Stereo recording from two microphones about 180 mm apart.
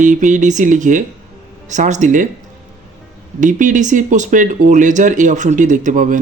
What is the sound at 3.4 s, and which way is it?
Speech, 45° right (ahead or behind).